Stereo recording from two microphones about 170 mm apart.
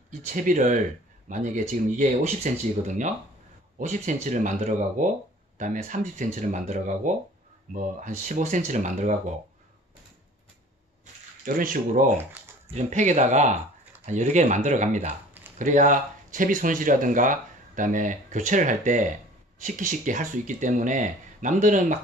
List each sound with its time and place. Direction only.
0.3 s speech: 50° right (ahead or behind)
3.7 s speech: 45° right (ahead or behind)
11.4 s speech: 55° right (ahead or behind)
12.7 s speech: 45° right (ahead or behind)